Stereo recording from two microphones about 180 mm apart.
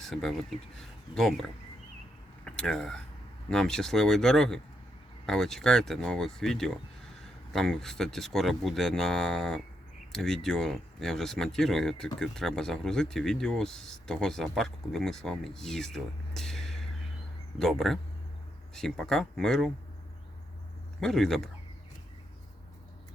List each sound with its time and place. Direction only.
0.0 s speech: centre (ahead or behind)
21.0 s speech: centre (ahead or behind)